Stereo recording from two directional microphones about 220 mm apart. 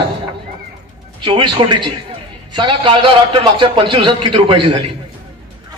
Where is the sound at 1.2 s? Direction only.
20° right (ahead or behind).